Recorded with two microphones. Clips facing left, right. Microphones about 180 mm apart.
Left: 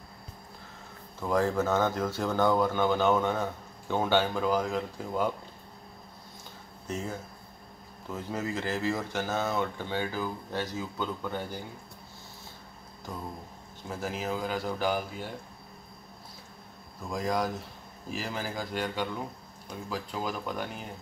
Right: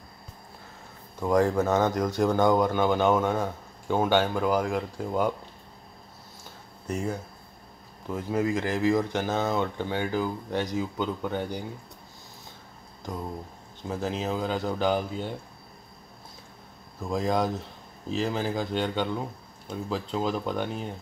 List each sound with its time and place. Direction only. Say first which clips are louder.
1.2 s speech: right 4 dB; 15° right (ahead or behind)
6.9 s speech: right 5 dB; 10° right (ahead or behind)
13.8 s speech: right 4 dB; 20° right (ahead or behind)
17.1 s speech: right 4 dB; 25° right (ahead or behind)